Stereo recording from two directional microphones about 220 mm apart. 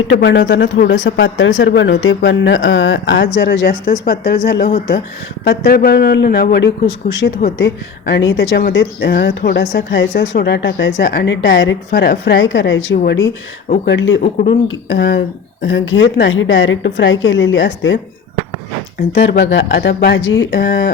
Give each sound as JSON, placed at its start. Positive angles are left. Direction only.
{"t": 0.0, "sound": "speech", "side_deg": 50}
{"t": 7.4, "sound": "a woman's voice", "side_deg": 30}
{"t": 8.1, "sound": "a woman's voice", "side_deg": 55}
{"t": 14.2, "sound": "speech", "side_deg": 35}
{"t": 14.7, "sound": "a woman's voice", "side_deg": 55}